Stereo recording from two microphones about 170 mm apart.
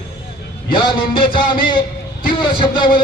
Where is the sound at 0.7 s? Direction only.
30° left (ahead or behind).